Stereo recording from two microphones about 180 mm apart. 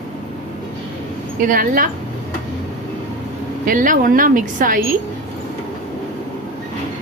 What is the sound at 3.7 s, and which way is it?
A woman's voice, 50° right (ahead or behind).